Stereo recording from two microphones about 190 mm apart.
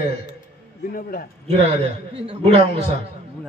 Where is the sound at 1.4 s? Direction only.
35° right (ahead or behind).